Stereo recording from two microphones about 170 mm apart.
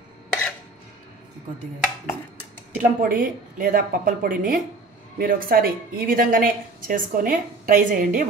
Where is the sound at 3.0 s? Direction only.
55° right (ahead or behind).